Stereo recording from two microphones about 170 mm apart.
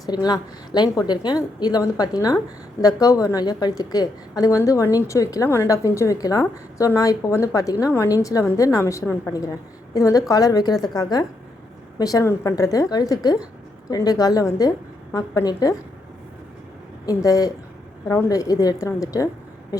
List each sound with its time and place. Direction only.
0.0 s a woman's voice: 25° left (ahead or behind)
17.1 s a woman's voice: 20° left (ahead or behind)